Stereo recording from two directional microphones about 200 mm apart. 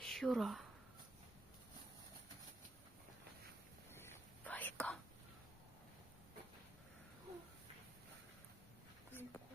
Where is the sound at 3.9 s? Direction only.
10° left (ahead or behind).